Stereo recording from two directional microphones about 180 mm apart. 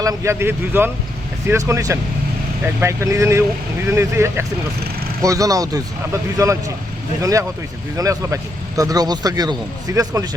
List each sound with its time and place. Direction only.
0.0 s speech: 20° right (ahead or behind)